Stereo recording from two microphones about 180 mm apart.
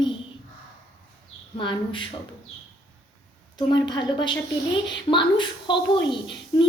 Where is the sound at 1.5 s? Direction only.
30° left (ahead or behind).